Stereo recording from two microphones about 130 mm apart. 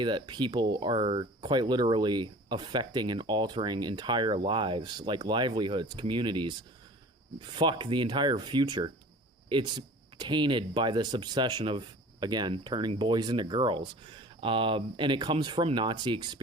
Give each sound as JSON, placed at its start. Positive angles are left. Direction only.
{"t": 0.0, "sound": "speech", "side_deg": -35}